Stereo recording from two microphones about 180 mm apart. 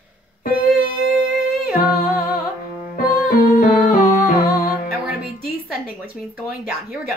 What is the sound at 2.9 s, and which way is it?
Music, 55° left (ahead or behind).